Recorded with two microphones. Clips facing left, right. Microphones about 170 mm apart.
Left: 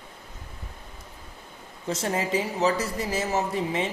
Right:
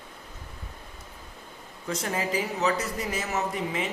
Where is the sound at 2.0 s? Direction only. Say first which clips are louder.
Left 3 dB; 30° left (ahead or behind).